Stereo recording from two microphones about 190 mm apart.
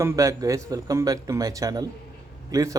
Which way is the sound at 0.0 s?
15° right (ahead or behind).